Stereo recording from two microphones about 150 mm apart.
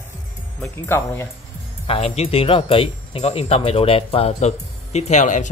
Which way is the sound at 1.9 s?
40° left (ahead or behind).